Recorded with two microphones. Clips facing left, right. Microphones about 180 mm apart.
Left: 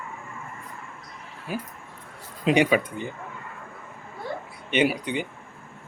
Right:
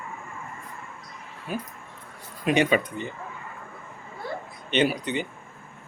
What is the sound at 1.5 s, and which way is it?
Speech, 10° left (ahead or behind).